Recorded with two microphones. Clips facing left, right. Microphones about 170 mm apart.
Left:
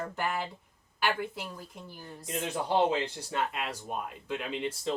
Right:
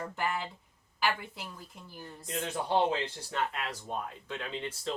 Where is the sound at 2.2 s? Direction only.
20° left (ahead or behind).